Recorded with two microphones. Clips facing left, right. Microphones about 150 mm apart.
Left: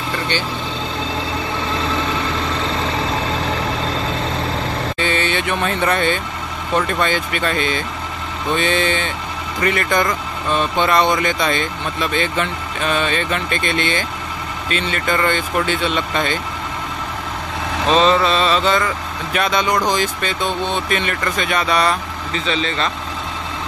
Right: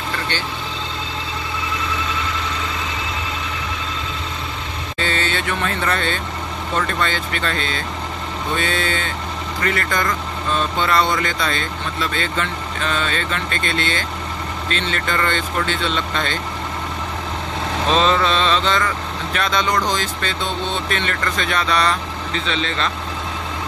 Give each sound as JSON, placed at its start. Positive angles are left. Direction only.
{"t": 4.9, "sound": "speech", "side_deg": 15}
{"t": 17.8, "sound": "mantra", "side_deg": 0}
{"t": 19.3, "sound": "speech", "side_deg": 10}